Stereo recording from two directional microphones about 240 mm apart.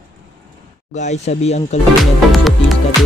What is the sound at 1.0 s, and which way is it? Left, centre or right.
Speech, left.